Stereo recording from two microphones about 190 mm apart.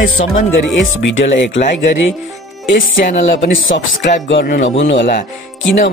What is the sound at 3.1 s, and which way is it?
Speech, 70° left (ahead or behind).